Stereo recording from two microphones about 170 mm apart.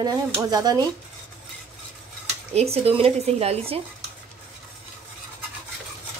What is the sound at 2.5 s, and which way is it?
Speech, 35° right (ahead or behind).